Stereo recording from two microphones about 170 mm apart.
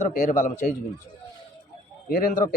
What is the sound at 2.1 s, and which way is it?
Speech, 55° left (ahead or behind).